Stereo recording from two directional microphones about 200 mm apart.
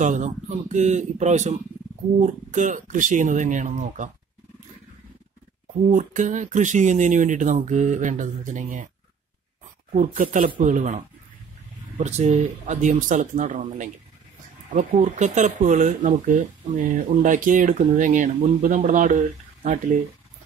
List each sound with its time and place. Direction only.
0.0 s speech: 35° right (ahead or behind)
5.9 s speech: 40° right (ahead or behind)
9.9 s speech: 40° right (ahead or behind)